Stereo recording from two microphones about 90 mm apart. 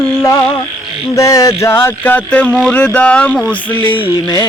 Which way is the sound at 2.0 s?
15° left (ahead or behind).